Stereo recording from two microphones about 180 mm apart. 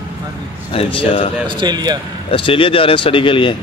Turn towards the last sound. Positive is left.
turn(degrees=30)  # may be behind; listen again after turning